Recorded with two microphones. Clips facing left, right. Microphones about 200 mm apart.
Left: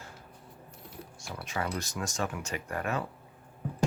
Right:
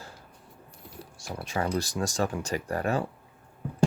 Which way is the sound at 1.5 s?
30° right (ahead or behind).